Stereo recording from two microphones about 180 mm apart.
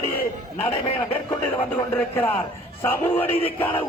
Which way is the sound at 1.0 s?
25° left (ahead or behind).